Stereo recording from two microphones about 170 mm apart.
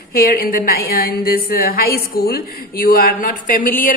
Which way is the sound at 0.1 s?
55° left (ahead or behind).